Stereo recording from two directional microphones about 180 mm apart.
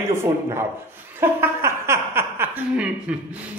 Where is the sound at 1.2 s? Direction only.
15° right (ahead or behind).